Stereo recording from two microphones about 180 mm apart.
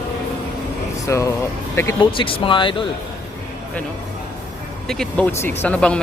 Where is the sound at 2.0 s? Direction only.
25° left (ahead or behind).